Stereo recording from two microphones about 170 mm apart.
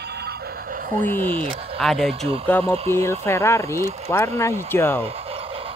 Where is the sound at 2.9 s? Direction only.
15° left (ahead or behind).